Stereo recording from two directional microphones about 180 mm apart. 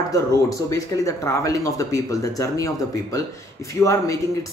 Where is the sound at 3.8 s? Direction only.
15° left (ahead or behind).